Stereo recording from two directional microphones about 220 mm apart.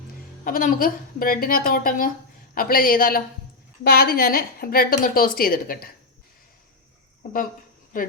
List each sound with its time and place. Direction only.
0.4 s a woman's voice: 40° left (ahead or behind)
7.9 s a woman's voice: 40° left (ahead or behind)